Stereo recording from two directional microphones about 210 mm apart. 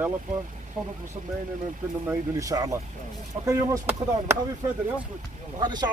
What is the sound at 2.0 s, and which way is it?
Speech, 15° right (ahead or behind).